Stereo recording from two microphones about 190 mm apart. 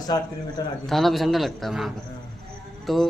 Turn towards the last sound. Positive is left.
turn(degrees=0)  # may be behind; listen again after turning